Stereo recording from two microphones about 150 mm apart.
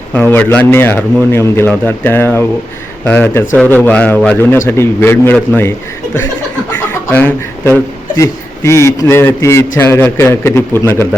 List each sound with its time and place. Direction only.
0.1 s a man's voice: 15° left (ahead or behind)
6.7 s a man's voice: 15° left (ahead or behind)